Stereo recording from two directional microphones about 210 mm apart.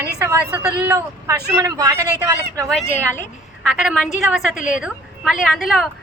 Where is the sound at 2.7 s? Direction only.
5° left (ahead or behind).